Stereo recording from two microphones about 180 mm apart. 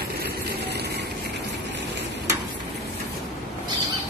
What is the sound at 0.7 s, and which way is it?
Vehicle, 65° right (ahead or behind).